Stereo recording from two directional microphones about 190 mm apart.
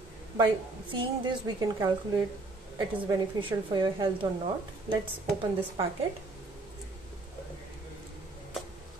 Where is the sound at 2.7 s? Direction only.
20° right (ahead or behind).